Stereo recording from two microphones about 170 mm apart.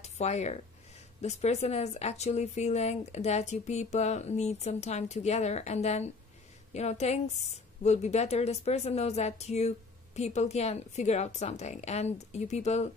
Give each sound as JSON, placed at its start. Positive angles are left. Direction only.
{"t": 0.0, "sound": "a woman's voice", "side_deg": 40}